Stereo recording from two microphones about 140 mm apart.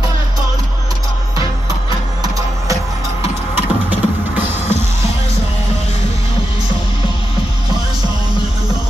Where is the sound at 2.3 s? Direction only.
25° right (ahead or behind).